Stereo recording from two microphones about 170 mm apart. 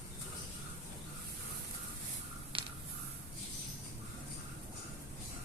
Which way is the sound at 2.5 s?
30° right (ahead or behind).